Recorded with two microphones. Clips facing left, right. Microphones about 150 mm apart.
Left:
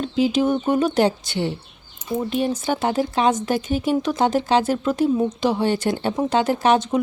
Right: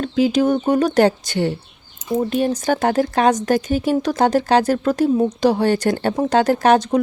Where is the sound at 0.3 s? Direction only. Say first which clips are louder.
Right 3 dB; 40° right (ahead or behind).